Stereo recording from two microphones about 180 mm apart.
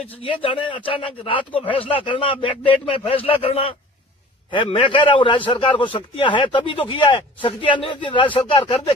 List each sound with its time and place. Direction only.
0.2 s speech: 30° left (ahead or behind)